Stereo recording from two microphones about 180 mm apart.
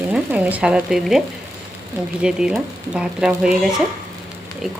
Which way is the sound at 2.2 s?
5° right (ahead or behind).